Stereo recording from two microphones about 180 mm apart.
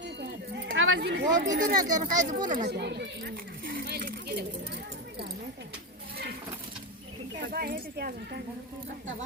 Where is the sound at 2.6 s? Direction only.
65° right (ahead or behind).